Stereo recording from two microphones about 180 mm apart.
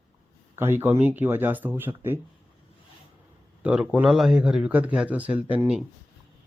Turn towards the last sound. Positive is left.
turn(degrees=-5)  # may be behind; listen again after turning